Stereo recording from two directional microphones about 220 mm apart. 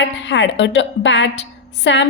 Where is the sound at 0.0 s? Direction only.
55° left (ahead or behind).